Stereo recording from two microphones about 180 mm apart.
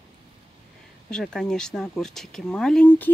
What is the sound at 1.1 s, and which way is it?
Speech, 5° left (ahead or behind).